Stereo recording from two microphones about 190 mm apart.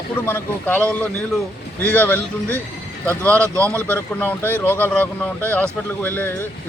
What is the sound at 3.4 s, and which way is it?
Speech, 15° right (ahead or behind).